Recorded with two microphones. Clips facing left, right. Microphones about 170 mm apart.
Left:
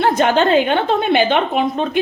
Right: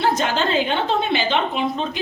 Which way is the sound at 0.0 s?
55° left (ahead or behind).